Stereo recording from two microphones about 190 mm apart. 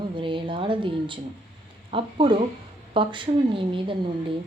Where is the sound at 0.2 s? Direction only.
25° right (ahead or behind).